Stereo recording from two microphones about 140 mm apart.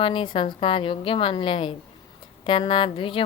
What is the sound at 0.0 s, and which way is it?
A woman's voice, 35° left (ahead or behind).